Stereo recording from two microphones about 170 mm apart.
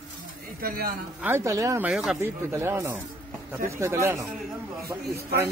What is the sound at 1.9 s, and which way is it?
Speech, centre (ahead or behind).